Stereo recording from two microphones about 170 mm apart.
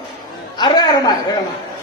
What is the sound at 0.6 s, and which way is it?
Speech, 25° left (ahead or behind).